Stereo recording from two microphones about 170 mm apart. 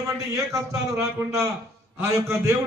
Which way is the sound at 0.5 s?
20° right (ahead or behind).